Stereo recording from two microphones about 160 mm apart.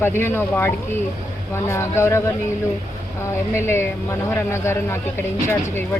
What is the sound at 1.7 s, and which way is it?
Speech, 15° left (ahead or behind).